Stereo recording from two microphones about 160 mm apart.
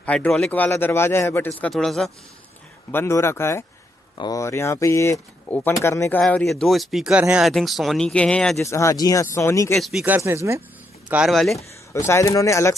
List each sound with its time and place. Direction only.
0.0 s speech: 10° left (ahead or behind)
1.7 s speech: centre (ahead or behind)
2.9 s speech: 15° left (ahead or behind)
6.2 s speech: centre (ahead or behind)
8.5 s speech: 20° left (ahead or behind)
9.8 s speech: centre (ahead or behind)
11.1 s speech: 5° right (ahead or behind)
11.9 s speech: 15° left (ahead or behind)